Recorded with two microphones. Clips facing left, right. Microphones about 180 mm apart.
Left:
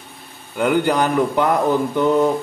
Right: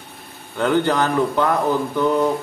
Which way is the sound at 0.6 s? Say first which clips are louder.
Left 1 dB; 10° left (ahead or behind).